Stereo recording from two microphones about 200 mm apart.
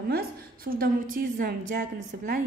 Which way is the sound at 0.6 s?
45° right (ahead or behind).